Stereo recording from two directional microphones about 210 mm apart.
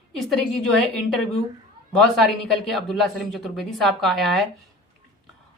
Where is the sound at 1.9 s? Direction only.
Centre (ahead or behind).